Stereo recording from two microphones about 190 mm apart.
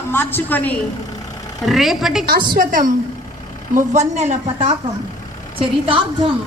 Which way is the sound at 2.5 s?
45° right (ahead or behind).